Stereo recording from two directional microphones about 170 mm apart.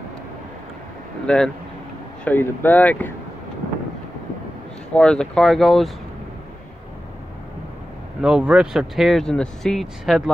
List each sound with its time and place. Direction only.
1.2 s speech: 5° left (ahead or behind)
4.9 s speech: 5° left (ahead or behind)
8.2 s speech: 5° right (ahead or behind)